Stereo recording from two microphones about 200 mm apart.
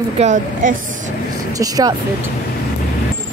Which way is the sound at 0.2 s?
35° right (ahead or behind).